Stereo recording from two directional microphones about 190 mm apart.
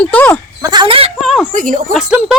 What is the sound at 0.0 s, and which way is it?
Speech, 5° left (ahead or behind).